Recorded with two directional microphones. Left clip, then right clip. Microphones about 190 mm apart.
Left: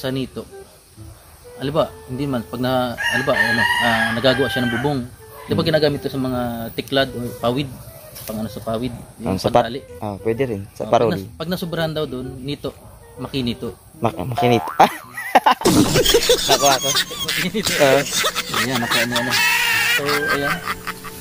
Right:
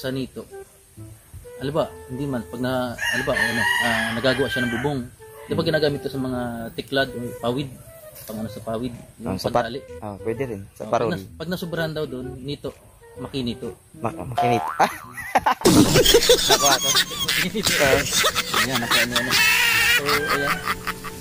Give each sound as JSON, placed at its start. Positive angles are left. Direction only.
{"t": 0.0, "sound": "speech", "side_deg": 0}
{"t": 1.6, "sound": "speech", "side_deg": -5}
{"t": 9.2, "sound": "speech", "side_deg": 25}
{"t": 11.1, "sound": "speech", "side_deg": -5}
{"t": 14.0, "sound": "speech", "side_deg": 25}
{"t": 14.3, "sound": "speech", "side_deg": 0}
{"t": 14.8, "sound": "speech", "side_deg": 25}
{"t": 15.6, "sound": "speech", "side_deg": 0}